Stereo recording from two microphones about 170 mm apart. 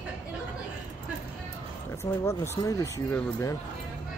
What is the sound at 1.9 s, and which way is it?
Speech, 15° left (ahead or behind).